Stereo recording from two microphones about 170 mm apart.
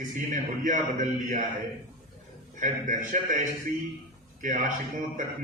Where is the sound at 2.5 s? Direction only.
50° right (ahead or behind).